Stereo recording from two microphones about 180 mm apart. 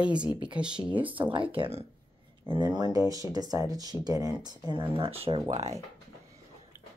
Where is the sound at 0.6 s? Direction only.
5° right (ahead or behind).